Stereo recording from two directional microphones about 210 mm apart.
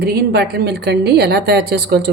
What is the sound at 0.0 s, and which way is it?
A woman's voice, 50° right (ahead or behind).